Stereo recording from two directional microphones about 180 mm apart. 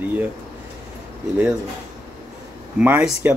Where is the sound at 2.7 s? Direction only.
10° right (ahead or behind).